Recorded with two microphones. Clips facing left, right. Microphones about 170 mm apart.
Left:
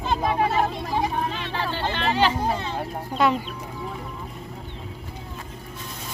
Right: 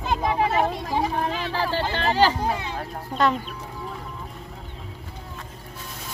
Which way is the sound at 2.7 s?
10° left (ahead or behind).